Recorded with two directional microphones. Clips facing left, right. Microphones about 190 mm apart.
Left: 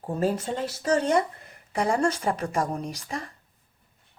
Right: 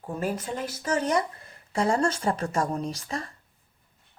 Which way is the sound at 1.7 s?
15° left (ahead or behind).